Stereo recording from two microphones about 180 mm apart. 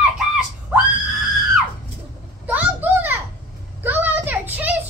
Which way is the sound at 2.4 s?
10° right (ahead or behind).